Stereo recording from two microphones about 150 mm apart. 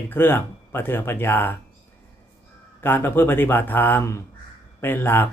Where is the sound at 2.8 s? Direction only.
15° left (ahead or behind).